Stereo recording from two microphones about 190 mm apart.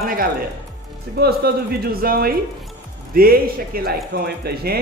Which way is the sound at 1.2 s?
55° right (ahead or behind).